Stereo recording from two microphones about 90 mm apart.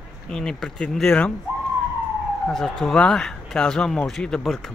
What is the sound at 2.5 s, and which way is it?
Speech, 5° left (ahead or behind).